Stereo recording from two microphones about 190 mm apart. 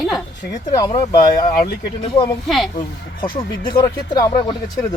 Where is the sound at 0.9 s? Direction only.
20° left (ahead or behind).